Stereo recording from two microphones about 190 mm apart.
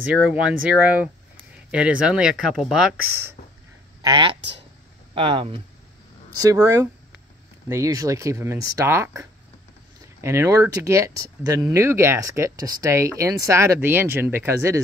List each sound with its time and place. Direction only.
0.0 s speech: 5° right (ahead or behind)
4.0 s speech: 25° right (ahead or behind)